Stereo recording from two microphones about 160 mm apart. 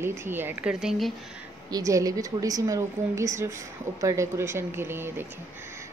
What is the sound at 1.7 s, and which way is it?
A woman's voice, 20° right (ahead or behind).